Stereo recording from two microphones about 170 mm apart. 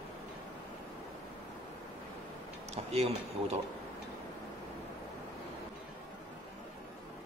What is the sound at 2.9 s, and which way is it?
Speech, 35° right (ahead or behind).